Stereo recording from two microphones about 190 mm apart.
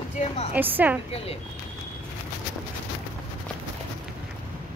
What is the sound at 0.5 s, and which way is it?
Speech, 10° right (ahead or behind).